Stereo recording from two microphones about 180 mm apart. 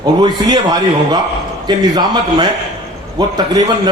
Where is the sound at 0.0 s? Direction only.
25° right (ahead or behind).